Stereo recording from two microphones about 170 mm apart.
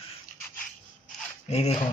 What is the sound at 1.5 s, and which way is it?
Speech, 40° left (ahead or behind).